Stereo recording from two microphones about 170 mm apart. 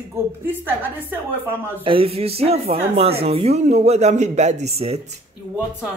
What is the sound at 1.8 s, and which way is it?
Speech, 35° right (ahead or behind).